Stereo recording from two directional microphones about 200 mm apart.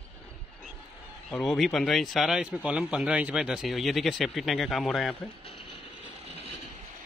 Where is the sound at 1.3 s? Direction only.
Centre (ahead or behind).